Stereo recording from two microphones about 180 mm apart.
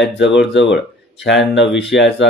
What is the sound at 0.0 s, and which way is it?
Speech, 75° left (ahead or behind).